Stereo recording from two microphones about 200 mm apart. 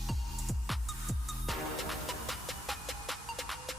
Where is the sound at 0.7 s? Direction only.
Centre (ahead or behind).